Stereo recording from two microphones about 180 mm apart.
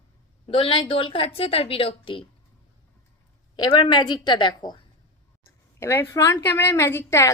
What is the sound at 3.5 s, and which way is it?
A woman's voice, 25° left (ahead or behind).